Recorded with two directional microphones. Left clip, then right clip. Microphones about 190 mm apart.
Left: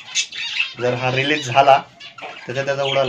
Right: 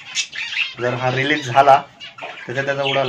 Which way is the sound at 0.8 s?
25° left (ahead or behind).